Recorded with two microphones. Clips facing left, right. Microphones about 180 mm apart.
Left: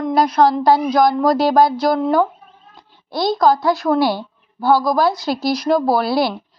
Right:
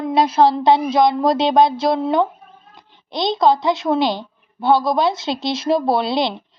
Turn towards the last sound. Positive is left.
turn(degrees=-20)  # may be behind; listen again after turning